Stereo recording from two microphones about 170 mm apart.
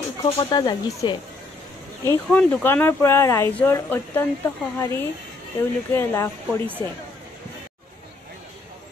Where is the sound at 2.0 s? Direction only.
10° left (ahead or behind).